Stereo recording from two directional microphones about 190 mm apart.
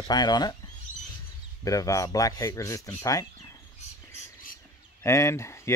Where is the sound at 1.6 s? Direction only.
15° left (ahead or behind).